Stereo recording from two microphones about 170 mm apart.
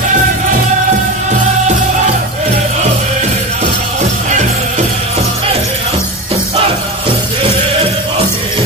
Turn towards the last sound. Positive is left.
turn(degrees=-30)  # may be behind; listen again after turning